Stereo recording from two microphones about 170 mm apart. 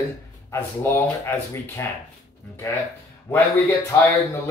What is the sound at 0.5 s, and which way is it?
Speech, 15° left (ahead or behind).